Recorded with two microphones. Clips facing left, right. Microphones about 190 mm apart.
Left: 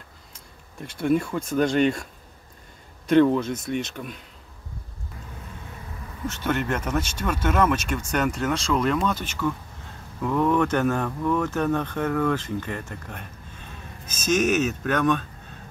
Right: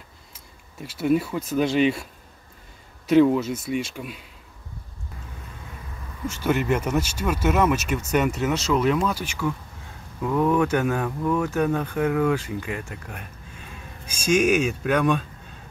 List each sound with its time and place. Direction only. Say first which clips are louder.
0.3 s a sound: left 1 dB; 5° right (ahead or behind)
1.5 s speech: even; 5° right (ahead or behind)
3.1 s speech: right 1 dB; 5° right (ahead or behind)
6.2 s speech: right 3 dB; 10° right (ahead or behind)